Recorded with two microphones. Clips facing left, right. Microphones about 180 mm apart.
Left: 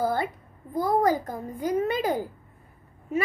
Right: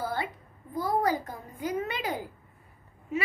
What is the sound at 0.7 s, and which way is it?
A child's voice, 45° left (ahead or behind).